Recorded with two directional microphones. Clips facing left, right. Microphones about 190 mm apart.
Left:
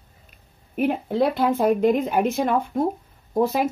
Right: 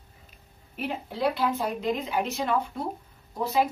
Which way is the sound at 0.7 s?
55° left (ahead or behind).